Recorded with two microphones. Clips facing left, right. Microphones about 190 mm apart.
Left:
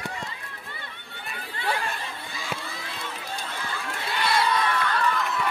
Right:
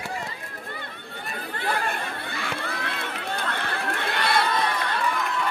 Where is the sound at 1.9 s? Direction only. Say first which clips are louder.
Right 4 dB; 65° right (ahead or behind).